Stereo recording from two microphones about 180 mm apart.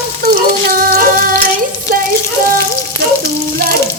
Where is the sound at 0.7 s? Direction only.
55° right (ahead or behind).